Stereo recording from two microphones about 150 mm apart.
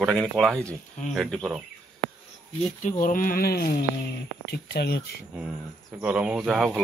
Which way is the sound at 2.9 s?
65° left (ahead or behind).